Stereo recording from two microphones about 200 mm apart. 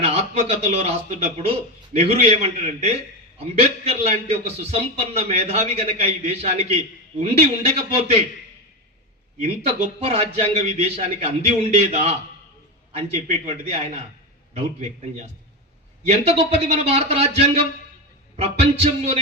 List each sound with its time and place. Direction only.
0.0 s a man's voice: 30° right (ahead or behind)
9.4 s a man's voice: 35° right (ahead or behind)